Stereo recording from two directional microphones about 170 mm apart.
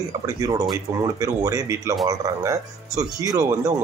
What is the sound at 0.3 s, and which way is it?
Speech, 20° right (ahead or behind).